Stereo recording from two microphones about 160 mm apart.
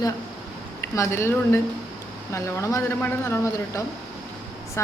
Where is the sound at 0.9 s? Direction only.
15° left (ahead or behind).